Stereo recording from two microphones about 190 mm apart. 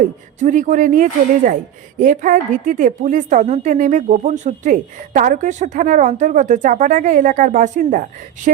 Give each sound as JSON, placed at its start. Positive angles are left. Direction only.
{"t": 0.3, "sound": "a woman's voice", "side_deg": -40}